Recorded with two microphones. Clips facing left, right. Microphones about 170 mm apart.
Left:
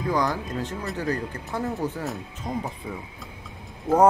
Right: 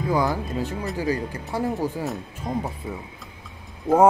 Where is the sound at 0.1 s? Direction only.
10° right (ahead or behind).